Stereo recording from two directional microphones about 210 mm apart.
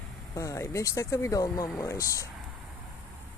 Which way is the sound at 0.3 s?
15° left (ahead or behind).